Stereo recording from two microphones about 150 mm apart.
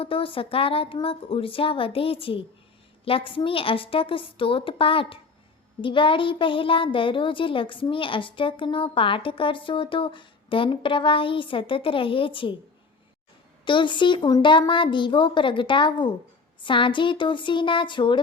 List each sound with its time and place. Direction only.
0.0 s a woman's voice: 35° left (ahead or behind)
13.7 s a woman's voice: 30° left (ahead or behind)